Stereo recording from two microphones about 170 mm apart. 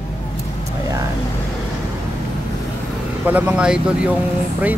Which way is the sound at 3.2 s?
10° right (ahead or behind).